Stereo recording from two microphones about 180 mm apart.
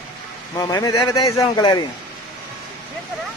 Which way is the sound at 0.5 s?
20° left (ahead or behind).